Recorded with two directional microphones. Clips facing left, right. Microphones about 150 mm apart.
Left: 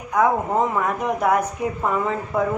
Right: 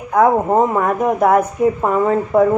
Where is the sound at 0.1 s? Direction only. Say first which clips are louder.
Right 6 dB; 50° right (ahead or behind).